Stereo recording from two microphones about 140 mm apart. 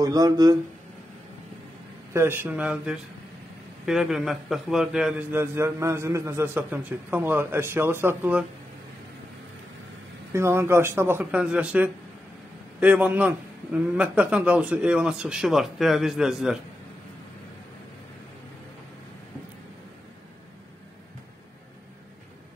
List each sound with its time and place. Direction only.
0.0 s speech: 25° right (ahead or behind)
2.1 s a man's voice: 15° right (ahead or behind)
5.4 s a man's voice: 20° right (ahead or behind)
10.3 s a man's voice: 20° right (ahead or behind); by 16.5 s 5° right (ahead or behind)